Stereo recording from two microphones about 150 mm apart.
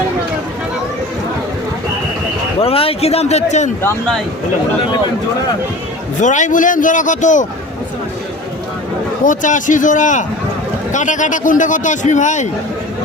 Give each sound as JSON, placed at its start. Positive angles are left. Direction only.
{"t": 2.6, "sound": "a man's voice", "side_deg": 40}
{"t": 3.8, "sound": "speech", "side_deg": 10}
{"t": 6.2, "sound": "a man's voice", "side_deg": 55}
{"t": 9.2, "sound": "a man's voice", "side_deg": 60}